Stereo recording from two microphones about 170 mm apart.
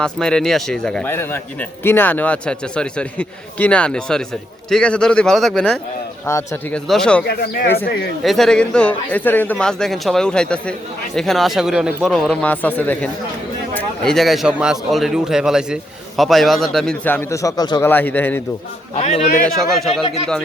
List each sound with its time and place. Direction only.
0.0 s a man's voice: 5° left (ahead or behind)
6.2 s a man's voice: 15° left (ahead or behind)
6.7 s a man's voice: 5° left (ahead or behind)
7.3 s speech: 65° left (ahead or behind)
8.2 s a man's voice: centre (ahead or behind)
18.9 s a man's voice: 40° left (ahead or behind)
19.3 s a man's voice: centre (ahead or behind)